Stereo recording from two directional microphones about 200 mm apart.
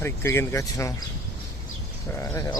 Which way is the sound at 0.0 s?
10° left (ahead or behind).